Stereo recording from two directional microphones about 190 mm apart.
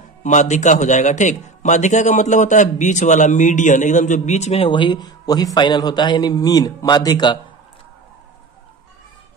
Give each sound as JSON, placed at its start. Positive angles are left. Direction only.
{"t": 0.2, "sound": "a man's voice", "side_deg": 40}